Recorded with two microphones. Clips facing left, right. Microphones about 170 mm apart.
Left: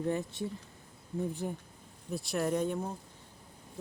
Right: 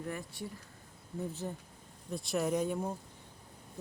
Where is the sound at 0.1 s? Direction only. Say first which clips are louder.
Left 7 dB; 20° left (ahead or behind).